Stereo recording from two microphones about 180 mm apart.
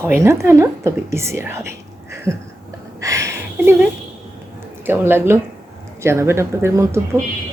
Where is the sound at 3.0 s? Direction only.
15° right (ahead or behind).